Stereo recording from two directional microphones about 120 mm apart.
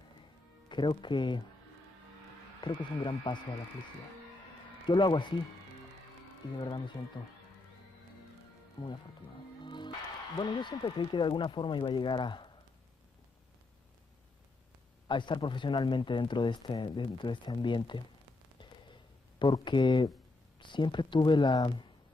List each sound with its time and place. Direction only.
0.7 s speech: 40° left (ahead or behind)
2.6 s speech: 40° left (ahead or behind)
4.8 s speech: 40° left (ahead or behind)
7.2 s speech: 40° left (ahead or behind)
8.8 s speech: 40° left (ahead or behind)
15.0 s speech: 40° left (ahead or behind)
18.6 s a sound: 40° left (ahead or behind)
20.5 s speech: 40° left (ahead or behind)